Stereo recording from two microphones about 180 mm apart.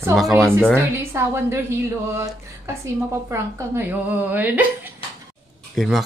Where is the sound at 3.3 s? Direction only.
15° right (ahead or behind).